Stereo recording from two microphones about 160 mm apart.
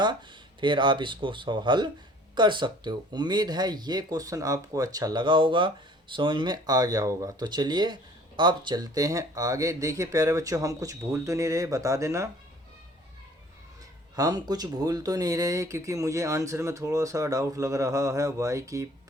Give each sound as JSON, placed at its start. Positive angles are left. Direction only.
{"t": 0.6, "sound": "speech", "side_deg": -30}
{"t": 14.2, "sound": "speech", "side_deg": -25}